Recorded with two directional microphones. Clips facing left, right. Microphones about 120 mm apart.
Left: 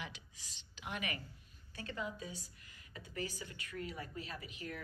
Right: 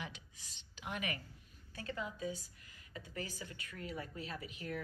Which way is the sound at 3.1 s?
30° right (ahead or behind).